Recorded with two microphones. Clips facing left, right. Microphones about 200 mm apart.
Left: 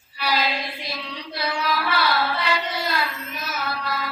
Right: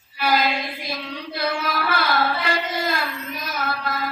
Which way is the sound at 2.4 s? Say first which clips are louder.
Right 1 dB; 50° right (ahead or behind).